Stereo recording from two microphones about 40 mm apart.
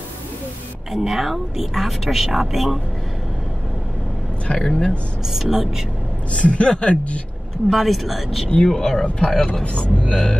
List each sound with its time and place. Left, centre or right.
0.9 s speech: centre
4.6 s speech: centre
5.3 s speech: centre
6.3 s speech: left
7.7 s speech: centre
8.6 s speech: centre
9.0 s speech: left